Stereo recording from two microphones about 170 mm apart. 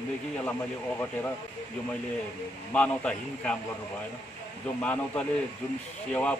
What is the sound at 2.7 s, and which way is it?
Speech, 5° left (ahead or behind).